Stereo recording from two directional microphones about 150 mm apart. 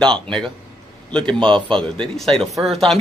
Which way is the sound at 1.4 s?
35° right (ahead or behind).